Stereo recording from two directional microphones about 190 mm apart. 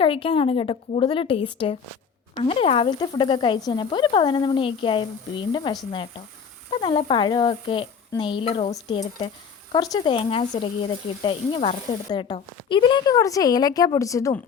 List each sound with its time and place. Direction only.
0.0 s speech: 30° left (ahead or behind)
6.7 s speech: 25° left (ahead or behind)